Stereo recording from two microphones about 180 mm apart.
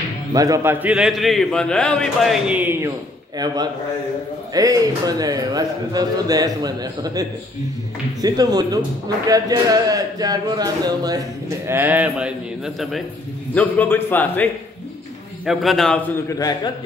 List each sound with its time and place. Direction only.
0.3 s speech: 20° right (ahead or behind)
0.8 s a man's voice: 5° right (ahead or behind)
4.6 s speech: 20° right (ahead or behind); by 13.0 s centre (ahead or behind)
13.6 s a man's voice: 10° left (ahead or behind)
16.3 s a man's voice: 20° left (ahead or behind)